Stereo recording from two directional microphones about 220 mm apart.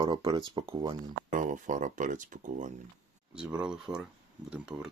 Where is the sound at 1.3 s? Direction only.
35° right (ahead or behind).